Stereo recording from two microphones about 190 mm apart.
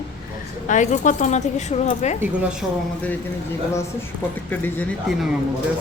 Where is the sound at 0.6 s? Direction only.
40° left (ahead or behind).